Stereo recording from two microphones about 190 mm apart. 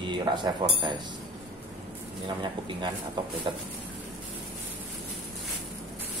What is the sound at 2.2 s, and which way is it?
Speech, 25° right (ahead or behind).